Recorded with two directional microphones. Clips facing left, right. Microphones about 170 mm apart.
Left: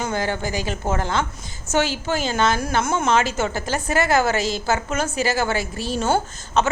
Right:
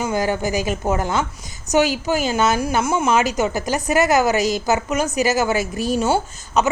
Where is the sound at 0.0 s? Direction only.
10° right (ahead or behind).